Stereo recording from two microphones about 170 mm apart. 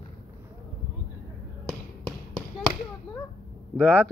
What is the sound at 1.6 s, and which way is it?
Basketball bounce, centre (ahead or behind).